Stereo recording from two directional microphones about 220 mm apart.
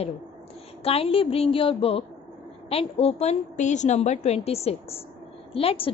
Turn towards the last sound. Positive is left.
turn(degrees=25)  # may be behind; listen again after turning